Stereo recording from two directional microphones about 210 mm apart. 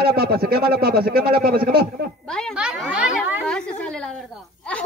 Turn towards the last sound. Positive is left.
turn(degrees=-5)  # may be behind; listen again after turning